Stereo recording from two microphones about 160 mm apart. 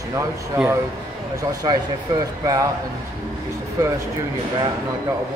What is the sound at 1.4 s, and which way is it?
Speech, 25° right (ahead or behind).